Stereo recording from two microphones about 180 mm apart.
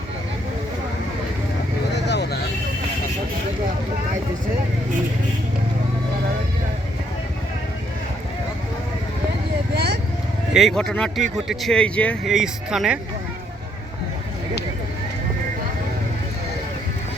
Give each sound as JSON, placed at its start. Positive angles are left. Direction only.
{"t": 1.9, "sound": "vehicle", "side_deg": 70}
{"t": 9.7, "sound": "vehicle", "side_deg": -65}
{"t": 10.5, "sound": "speech", "side_deg": 0}